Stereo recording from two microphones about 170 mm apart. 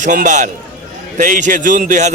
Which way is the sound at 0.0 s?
50° right (ahead or behind).